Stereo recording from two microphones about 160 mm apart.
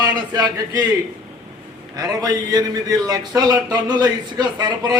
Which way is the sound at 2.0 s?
25° right (ahead or behind).